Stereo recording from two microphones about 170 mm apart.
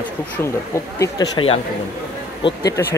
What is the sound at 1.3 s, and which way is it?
Speech, 35° left (ahead or behind).